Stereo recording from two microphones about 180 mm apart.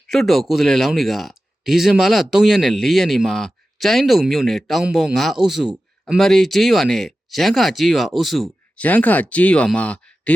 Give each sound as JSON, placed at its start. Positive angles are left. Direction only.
{"t": 0.1, "sound": "speech", "side_deg": 0}